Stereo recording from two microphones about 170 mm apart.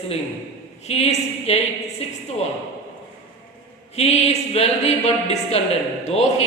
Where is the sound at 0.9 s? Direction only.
40° left (ahead or behind).